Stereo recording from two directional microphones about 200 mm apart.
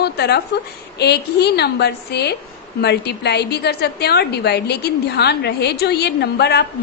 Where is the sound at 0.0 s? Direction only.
55° left (ahead or behind).